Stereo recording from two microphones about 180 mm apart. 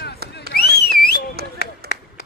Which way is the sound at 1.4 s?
60° right (ahead or behind).